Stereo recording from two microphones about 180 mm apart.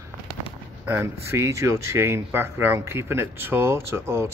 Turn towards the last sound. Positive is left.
turn(degrees=-15)  # may be behind; listen again after turning